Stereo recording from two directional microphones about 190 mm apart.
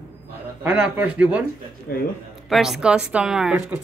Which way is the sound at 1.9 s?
50° left (ahead or behind).